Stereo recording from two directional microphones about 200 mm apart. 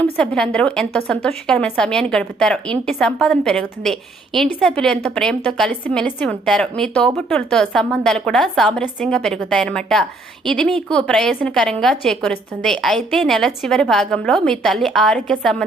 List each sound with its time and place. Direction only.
0.0 s a woman's voice: 5° left (ahead or behind)